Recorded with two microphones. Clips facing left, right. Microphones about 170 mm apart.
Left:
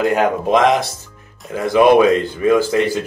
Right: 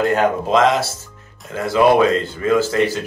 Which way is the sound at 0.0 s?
15° left (ahead or behind).